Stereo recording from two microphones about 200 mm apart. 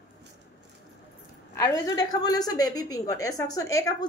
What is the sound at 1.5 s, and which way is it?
A woman's voice, 15° left (ahead or behind).